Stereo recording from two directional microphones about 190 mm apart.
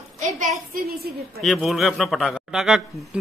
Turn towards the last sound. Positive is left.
turn(degrees=0)  # may be behind; listen again after turning